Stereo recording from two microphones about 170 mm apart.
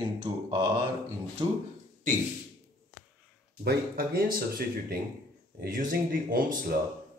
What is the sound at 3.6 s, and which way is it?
Speech, 65° right (ahead or behind).